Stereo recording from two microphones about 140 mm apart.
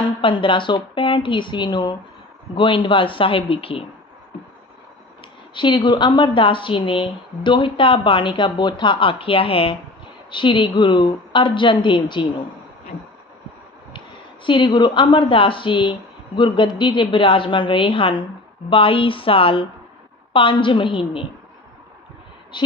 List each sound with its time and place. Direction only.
0.2 s speech: 35° left (ahead or behind)
5.5 s speech: 35° left (ahead or behind)
14.4 s speech: 35° left (ahead or behind)
22.5 s speech: 35° left (ahead or behind)